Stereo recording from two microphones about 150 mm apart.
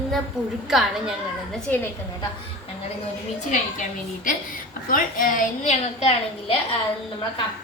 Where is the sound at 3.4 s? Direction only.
55° left (ahead or behind).